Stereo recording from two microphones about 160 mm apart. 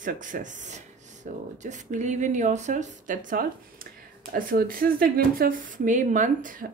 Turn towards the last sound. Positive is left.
turn(degrees=-55)  # may be behind; listen again after turning